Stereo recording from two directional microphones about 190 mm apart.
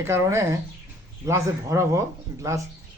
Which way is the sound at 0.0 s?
15° right (ahead or behind).